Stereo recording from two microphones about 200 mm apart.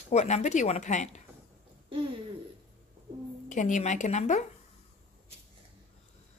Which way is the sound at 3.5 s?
40° left (ahead or behind).